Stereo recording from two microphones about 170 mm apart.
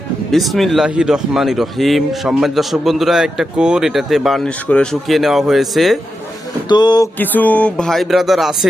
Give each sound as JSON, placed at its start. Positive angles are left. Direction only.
{"t": 0.3, "sound": "speech", "side_deg": 0}
{"t": 6.7, "sound": "a sound", "side_deg": 25}
{"t": 7.2, "sound": "speech", "side_deg": 10}